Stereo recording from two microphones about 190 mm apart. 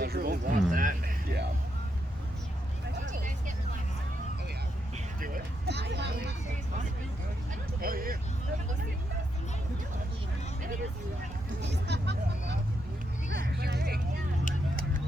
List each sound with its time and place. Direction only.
0.0 s a sound: 55° right (ahead or behind)
3.1 s vehicle: 40° right (ahead or behind)
5.2 s music: 55° right (ahead or behind)
7.8 s vehicle: 50° right (ahead or behind)
11.6 s vehicle: 65° right (ahead or behind)
13.3 s a sound: 55° right (ahead or behind)